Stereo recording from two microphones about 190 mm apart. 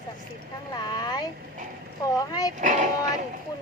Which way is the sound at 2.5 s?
40° right (ahead or behind).